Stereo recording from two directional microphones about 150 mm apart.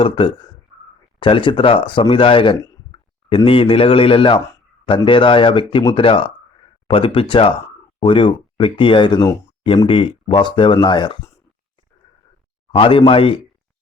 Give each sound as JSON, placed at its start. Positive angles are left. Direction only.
{"t": 0.0, "sound": "speech", "side_deg": 35}
{"t": 12.7, "sound": "speech", "side_deg": 35}